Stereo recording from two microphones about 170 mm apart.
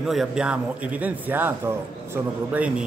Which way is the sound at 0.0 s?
Centre (ahead or behind).